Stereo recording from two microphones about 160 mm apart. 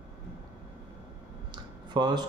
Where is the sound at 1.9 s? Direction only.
30° right (ahead or behind).